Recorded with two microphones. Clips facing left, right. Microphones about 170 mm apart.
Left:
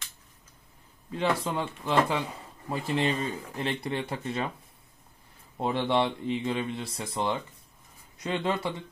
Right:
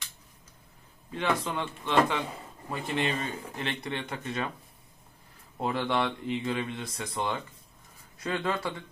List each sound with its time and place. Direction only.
1.1 s speech: 30° left (ahead or behind)
5.6 s speech: 25° left (ahead or behind)